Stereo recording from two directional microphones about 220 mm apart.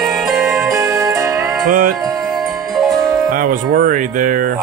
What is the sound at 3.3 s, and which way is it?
Music, 40° right (ahead or behind).